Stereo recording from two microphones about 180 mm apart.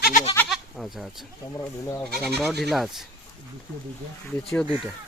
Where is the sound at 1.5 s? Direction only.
15° left (ahead or behind).